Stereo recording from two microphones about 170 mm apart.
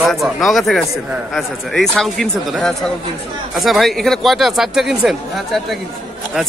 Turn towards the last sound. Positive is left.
turn(degrees=0)  # may be behind; listen again after turning